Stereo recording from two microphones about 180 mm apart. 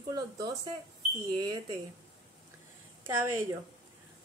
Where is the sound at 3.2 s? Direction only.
15° right (ahead or behind).